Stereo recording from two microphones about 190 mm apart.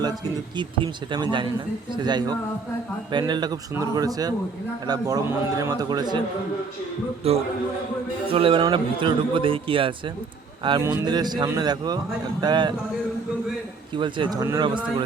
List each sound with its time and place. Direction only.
0.5 s a man's voice: 25° right (ahead or behind)
7.2 s a man's voice: 30° right (ahead or behind)
13.9 s a man's voice: 25° right (ahead or behind)